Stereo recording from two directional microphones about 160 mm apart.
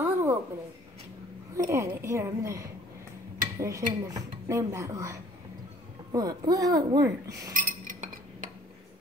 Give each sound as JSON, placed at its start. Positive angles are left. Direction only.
{"t": 0.0, "sound": "a sound", "side_deg": -15}
{"t": 1.7, "sound": "speech", "side_deg": -20}
{"t": 7.5, "sound": "chink", "side_deg": -55}